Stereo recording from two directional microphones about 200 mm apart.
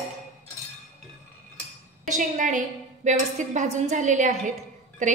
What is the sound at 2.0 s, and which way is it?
A woman's voice, 40° right (ahead or behind).